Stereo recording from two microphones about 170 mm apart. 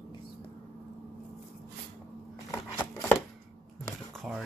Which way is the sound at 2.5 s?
15° left (ahead or behind).